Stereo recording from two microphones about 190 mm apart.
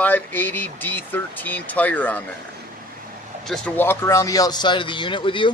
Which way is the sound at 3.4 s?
5° left (ahead or behind).